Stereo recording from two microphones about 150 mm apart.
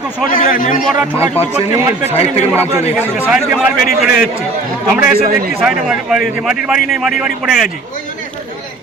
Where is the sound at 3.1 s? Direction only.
10° right (ahead or behind).